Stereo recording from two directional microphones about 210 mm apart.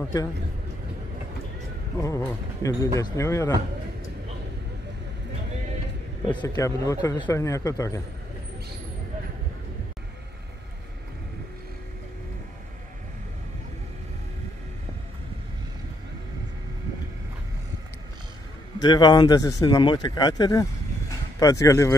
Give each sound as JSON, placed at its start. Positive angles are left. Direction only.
{"t": 2.0, "sound": "speech", "side_deg": 15}
{"t": 6.2, "sound": "speech", "side_deg": 15}
{"t": 18.8, "sound": "speech", "side_deg": 20}